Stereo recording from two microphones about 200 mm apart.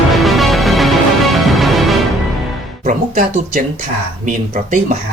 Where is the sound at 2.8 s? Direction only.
40° right (ahead or behind).